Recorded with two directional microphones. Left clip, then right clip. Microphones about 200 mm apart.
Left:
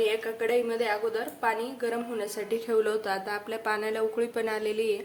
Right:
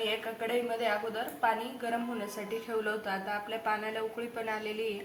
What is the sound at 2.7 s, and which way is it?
Speech, 65° left (ahead or behind).